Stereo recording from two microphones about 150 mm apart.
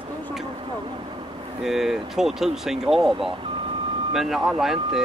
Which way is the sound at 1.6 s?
Centre (ahead or behind).